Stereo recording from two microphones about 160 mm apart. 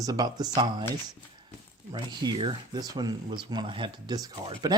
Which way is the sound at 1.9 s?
30° right (ahead or behind).